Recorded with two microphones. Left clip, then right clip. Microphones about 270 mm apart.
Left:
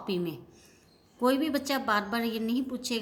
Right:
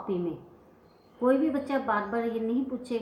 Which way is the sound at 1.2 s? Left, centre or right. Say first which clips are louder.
Right 2 dB; left.